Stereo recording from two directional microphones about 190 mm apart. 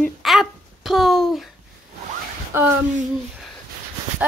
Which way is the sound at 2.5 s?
15° right (ahead or behind).